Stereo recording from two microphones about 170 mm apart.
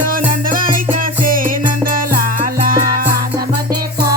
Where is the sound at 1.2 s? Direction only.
55° right (ahead or behind).